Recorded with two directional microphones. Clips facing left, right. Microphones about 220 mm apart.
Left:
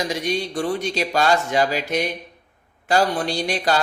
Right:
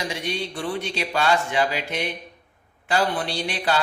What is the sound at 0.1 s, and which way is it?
Speech, 40° left (ahead or behind).